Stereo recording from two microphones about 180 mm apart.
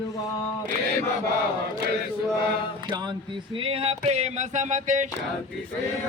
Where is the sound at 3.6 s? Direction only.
30° right (ahead or behind).